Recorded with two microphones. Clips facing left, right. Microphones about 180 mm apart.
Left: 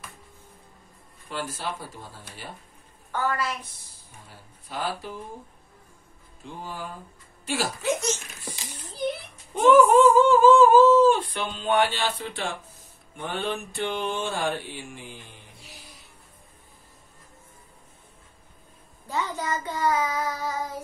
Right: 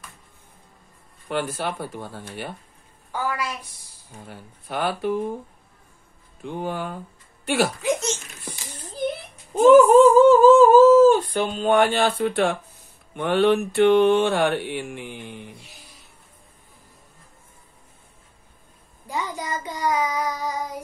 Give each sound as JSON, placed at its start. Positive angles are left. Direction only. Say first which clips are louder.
{"t": 1.3, "sound": "mantra", "louder": "right 6 dB", "side_deg": -60}
{"t": 3.1, "sound": "child singing", "louder": "even", "side_deg": -10}
{"t": 4.3, "sound": "mantra", "louder": "right 6 dB", "side_deg": -65}
{"t": 6.4, "sound": "mantra", "louder": "right 8 dB", "side_deg": -60}
{"t": 7.8, "sound": "a sound", "louder": "right 2 dB", "side_deg": -25}
{"t": 9.5, "sound": "a sound", "louder": "right 5 dB", "side_deg": -40}
{"t": 13.1, "sound": "mantra", "louder": "right 11 dB", "side_deg": -70}
{"t": 19.0, "sound": "child singing", "louder": "even", "side_deg": -15}